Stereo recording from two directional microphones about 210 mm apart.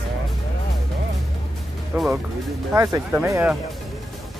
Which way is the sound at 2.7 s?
15° right (ahead or behind).